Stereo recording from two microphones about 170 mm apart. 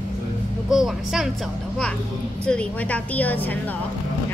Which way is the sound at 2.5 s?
5° left (ahead or behind).